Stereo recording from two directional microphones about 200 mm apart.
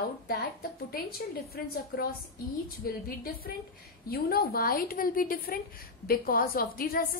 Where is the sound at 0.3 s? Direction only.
45° left (ahead or behind).